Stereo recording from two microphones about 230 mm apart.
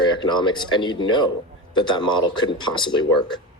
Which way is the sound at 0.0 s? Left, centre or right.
Centre.